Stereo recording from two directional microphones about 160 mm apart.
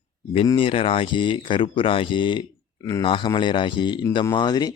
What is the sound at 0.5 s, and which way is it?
Speech, 35° left (ahead or behind).